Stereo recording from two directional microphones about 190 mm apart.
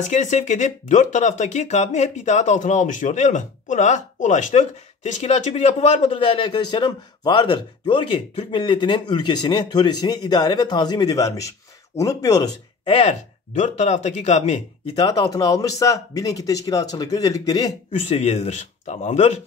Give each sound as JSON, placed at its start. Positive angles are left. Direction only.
{"t": 0.0, "sound": "speech", "side_deg": 40}
{"t": 12.8, "sound": "speech", "side_deg": 30}
{"t": 15.0, "sound": "speech", "side_deg": 20}
{"t": 18.0, "sound": "speech", "side_deg": 35}